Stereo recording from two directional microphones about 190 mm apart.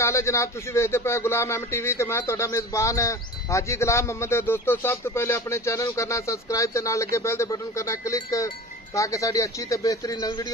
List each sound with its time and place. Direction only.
0.0 s speech: 15° left (ahead or behind)